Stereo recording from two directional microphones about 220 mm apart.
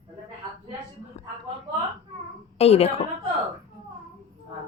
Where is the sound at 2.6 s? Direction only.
30° left (ahead or behind).